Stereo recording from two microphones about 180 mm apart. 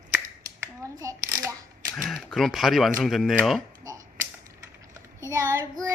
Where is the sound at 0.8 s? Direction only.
20° right (ahead or behind).